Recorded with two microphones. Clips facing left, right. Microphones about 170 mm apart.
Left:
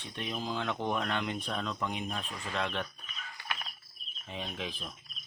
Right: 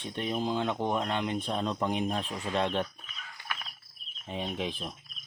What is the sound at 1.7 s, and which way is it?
Speech, 35° right (ahead or behind).